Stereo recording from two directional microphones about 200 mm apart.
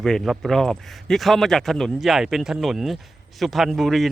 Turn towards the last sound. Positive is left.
turn(degrees=0)  # may be behind; listen again after turning